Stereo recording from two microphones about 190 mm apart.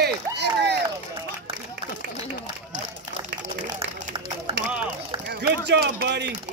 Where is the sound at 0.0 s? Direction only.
65° right (ahead or behind).